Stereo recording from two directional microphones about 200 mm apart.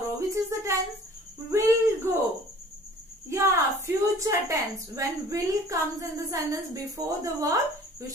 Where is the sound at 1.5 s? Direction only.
10° right (ahead or behind).